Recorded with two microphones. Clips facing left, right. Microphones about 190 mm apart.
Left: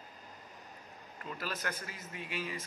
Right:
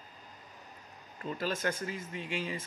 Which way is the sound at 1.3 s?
25° right (ahead or behind).